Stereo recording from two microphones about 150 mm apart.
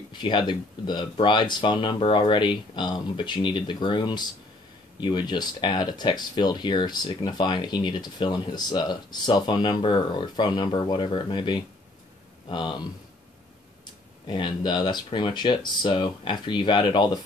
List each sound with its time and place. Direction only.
0.1 s speech: 30° left (ahead or behind)
14.2 s speech: 35° left (ahead or behind)